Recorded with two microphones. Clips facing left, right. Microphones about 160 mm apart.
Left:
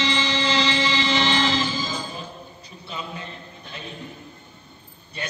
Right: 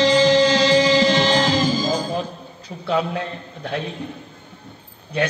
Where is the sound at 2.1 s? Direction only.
85° right.